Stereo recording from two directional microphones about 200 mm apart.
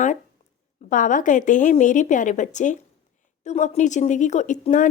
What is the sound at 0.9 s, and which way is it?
Speech, 40° left (ahead or behind).